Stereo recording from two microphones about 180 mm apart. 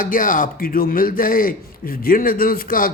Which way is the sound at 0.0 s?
50° left (ahead or behind).